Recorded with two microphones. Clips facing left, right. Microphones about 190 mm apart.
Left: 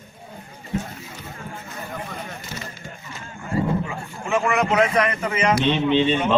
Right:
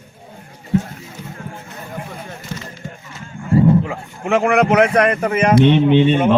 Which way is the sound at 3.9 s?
65° right (ahead or behind).